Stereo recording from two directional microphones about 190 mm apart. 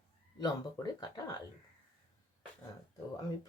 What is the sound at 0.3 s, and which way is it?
Speech, 20° left (ahead or behind).